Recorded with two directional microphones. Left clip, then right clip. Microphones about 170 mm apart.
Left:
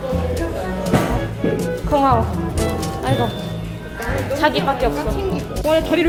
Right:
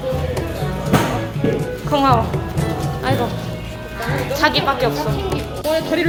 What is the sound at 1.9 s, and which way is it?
Speech, 15° left (ahead or behind).